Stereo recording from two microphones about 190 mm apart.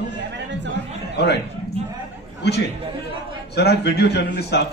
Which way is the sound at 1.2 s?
60° left (ahead or behind).